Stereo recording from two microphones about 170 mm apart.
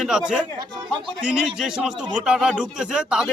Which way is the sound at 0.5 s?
30° right (ahead or behind).